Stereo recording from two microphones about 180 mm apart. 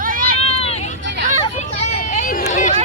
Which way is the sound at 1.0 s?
75° right (ahead or behind).